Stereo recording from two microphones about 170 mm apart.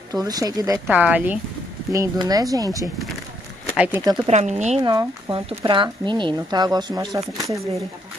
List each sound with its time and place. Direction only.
0.1 s speech: 20° right (ahead or behind)
0.8 s speech: 5° right (ahead or behind)
1.9 s speech: 20° right (ahead or behind)
3.7 s speech: 10° right (ahead or behind)
4.0 s speech: 20° right (ahead or behind)
4.3 s speech: 45° right (ahead or behind)
4.8 s speech: 30° right (ahead or behind)